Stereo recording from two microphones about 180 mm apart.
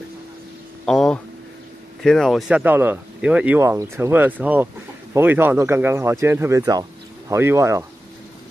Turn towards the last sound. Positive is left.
turn(degrees=-15)  # may be behind; listen again after turning